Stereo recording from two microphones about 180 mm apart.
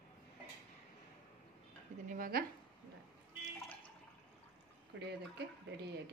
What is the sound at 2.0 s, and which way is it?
Speech, 50° right (ahead or behind).